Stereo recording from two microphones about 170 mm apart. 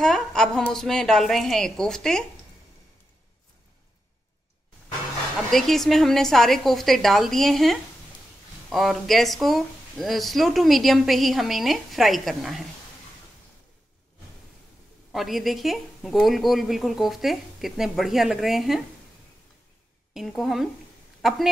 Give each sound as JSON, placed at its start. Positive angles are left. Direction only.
{"t": 0.0, "sound": "speech", "side_deg": 5}
{"t": 5.5, "sound": "speech", "side_deg": 0}
{"t": 15.1, "sound": "speech", "side_deg": 0}
{"t": 20.2, "sound": "a woman's voice", "side_deg": 0}